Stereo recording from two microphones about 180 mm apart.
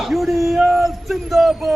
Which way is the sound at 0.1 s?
Centre (ahead or behind).